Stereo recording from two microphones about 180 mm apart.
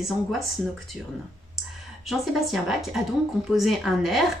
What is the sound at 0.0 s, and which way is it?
Speech, centre (ahead or behind).